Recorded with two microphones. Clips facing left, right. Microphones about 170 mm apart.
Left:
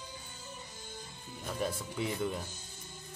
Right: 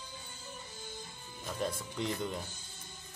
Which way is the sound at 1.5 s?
5° left (ahead or behind).